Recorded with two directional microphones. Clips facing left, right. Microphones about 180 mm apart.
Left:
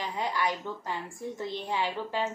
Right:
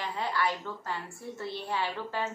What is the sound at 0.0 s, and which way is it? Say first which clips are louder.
A woman's voice: left 1 dB; 15° left (ahead or behind).